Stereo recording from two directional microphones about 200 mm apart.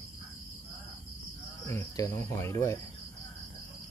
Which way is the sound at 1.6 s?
15° left (ahead or behind).